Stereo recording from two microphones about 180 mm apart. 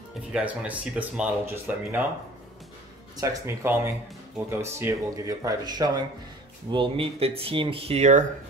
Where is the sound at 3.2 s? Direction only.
20° right (ahead or behind); by 8.2 s 40° right (ahead or behind).